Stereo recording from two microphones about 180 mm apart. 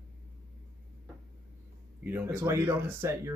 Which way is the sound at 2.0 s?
10° right (ahead or behind).